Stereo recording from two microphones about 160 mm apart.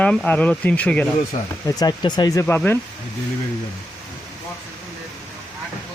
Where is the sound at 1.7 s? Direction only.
25° left (ahead or behind).